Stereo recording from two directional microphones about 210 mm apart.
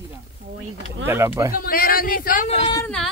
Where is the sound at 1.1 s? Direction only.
10° right (ahead or behind).